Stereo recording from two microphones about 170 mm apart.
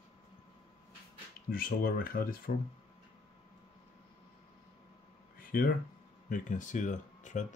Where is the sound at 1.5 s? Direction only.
55° left (ahead or behind).